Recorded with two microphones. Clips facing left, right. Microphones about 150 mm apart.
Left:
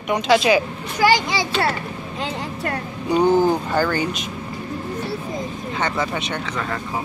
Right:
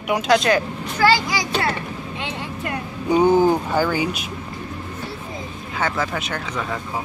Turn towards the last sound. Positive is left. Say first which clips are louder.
# left 1 dB
turn(degrees=-5)  # may be behind; listen again after turning